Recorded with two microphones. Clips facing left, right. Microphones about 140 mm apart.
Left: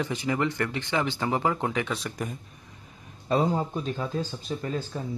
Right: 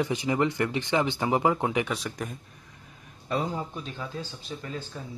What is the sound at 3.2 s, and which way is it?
Speech, 40° left (ahead or behind).